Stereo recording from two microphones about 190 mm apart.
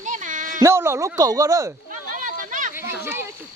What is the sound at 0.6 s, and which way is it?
Speech, 15° right (ahead or behind).